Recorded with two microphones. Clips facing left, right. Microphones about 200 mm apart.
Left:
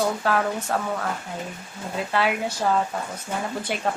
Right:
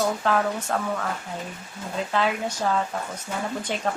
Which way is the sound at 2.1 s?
10° left (ahead or behind).